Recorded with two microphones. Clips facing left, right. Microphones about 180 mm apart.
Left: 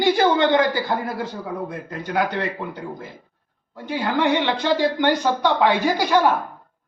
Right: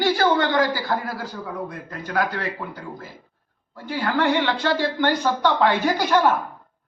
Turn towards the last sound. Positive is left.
turn(degrees=15)  # may be behind; listen again after turning